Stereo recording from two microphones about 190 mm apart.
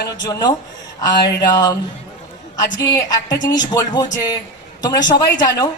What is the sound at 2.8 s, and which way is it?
A woman's voice, 20° left (ahead or behind).